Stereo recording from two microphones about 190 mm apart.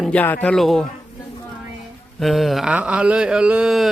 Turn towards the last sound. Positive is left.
turn(degrees=-5)  # may be behind; listen again after turning